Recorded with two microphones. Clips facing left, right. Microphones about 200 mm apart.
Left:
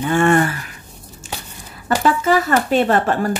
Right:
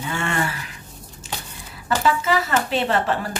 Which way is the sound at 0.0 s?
50° left (ahead or behind).